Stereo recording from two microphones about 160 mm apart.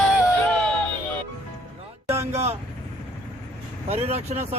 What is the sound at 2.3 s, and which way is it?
Vehicle, 40° right (ahead or behind).